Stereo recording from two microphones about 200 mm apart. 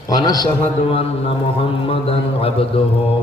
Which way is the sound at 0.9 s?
30° left (ahead or behind).